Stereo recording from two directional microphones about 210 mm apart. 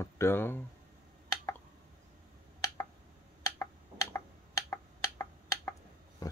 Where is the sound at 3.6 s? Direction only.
15° left (ahead or behind).